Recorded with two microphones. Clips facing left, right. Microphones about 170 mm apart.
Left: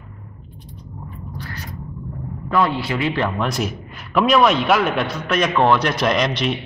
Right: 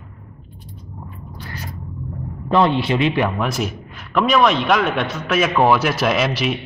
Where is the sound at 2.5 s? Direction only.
25° right (ahead or behind).